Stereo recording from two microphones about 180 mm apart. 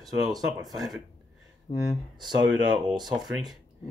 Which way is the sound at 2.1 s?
25° right (ahead or behind).